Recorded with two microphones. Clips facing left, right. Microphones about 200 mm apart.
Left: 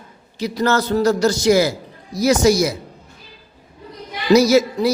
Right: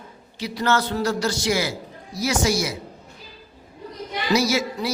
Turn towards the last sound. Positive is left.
turn(degrees=40)  # may be behind; listen again after turning